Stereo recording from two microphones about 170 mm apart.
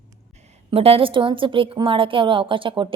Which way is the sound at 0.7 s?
35° right (ahead or behind).